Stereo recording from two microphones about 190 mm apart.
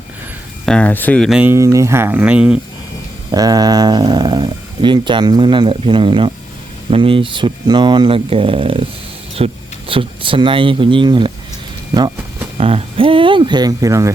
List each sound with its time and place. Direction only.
0.6 s speech: 5° left (ahead or behind)
3.3 s speech: 20° right (ahead or behind)
12.5 s speech: 30° right (ahead or behind)